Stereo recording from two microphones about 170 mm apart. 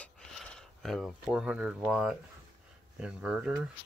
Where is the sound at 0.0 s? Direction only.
5° left (ahead or behind).